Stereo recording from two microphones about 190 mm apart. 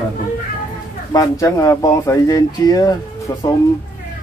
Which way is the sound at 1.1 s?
20° left (ahead or behind).